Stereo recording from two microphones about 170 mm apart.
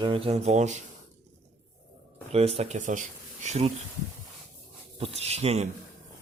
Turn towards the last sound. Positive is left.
turn(degrees=-40)  # may be behind; listen again after turning